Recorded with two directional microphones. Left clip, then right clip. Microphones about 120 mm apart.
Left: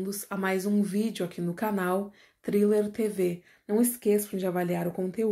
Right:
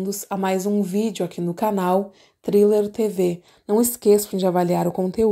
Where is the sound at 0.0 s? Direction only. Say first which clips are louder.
Right 7 dB; 50° right (ahead or behind).